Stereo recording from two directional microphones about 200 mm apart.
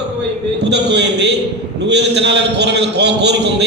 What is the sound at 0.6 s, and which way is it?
A man's voice, 55° right (ahead or behind).